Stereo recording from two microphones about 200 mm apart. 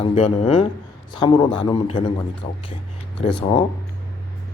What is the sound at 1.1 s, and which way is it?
Speech, 20° left (ahead or behind).